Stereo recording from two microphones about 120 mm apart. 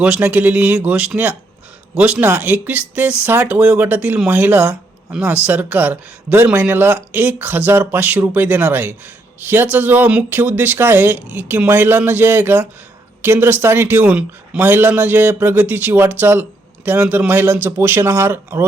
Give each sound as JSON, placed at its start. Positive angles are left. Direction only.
{"t": 0.0, "sound": "a man's voice", "side_deg": -10}